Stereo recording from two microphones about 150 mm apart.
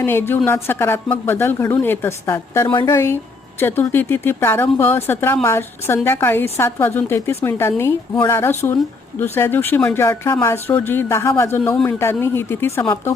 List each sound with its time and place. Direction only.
0.0 s speech: 15° left (ahead or behind)
2.6 s a woman's voice: 35° left (ahead or behind)
2.9 s speech: 15° left (ahead or behind)